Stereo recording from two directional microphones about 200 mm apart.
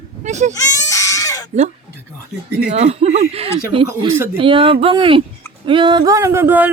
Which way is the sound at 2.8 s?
35° right (ahead or behind).